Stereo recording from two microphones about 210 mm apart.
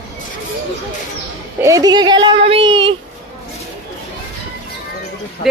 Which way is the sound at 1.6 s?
15° right (ahead or behind).